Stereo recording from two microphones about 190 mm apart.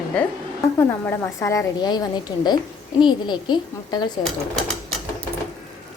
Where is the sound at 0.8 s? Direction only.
15° left (ahead or behind).